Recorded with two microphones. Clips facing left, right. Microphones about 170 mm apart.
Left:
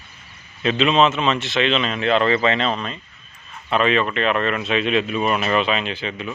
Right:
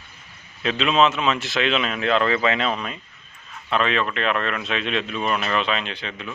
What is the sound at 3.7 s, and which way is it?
Speech, 5° left (ahead or behind).